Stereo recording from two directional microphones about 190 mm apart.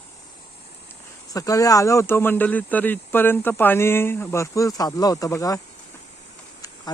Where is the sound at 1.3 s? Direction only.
20° left (ahead or behind).